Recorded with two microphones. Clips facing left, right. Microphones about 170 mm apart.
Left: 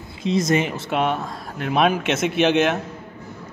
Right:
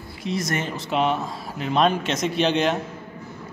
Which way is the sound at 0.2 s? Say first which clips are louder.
Left 7 dB; 20° left (ahead or behind).